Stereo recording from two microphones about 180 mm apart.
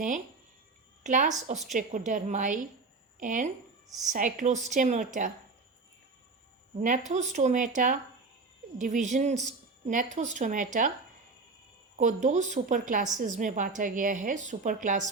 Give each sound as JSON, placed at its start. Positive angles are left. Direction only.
{"t": 1.0, "sound": "a woman's voice", "side_deg": -45}
{"t": 6.8, "sound": "a woman's voice", "side_deg": -45}
{"t": 11.9, "sound": "a woman's voice", "side_deg": -45}